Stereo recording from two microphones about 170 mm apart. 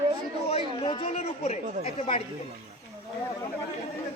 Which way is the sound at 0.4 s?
35° left (ahead or behind).